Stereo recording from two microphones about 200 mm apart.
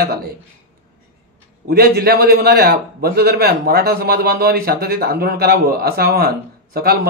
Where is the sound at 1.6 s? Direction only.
50° right (ahead or behind).